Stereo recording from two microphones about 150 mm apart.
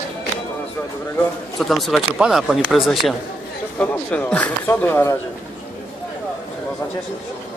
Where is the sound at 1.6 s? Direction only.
Centre (ahead or behind).